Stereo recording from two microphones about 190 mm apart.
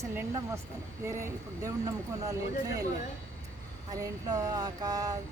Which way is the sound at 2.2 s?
20° right (ahead or behind).